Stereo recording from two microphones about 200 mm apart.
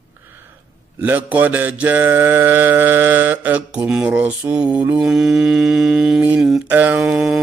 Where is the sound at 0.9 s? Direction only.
10° right (ahead or behind).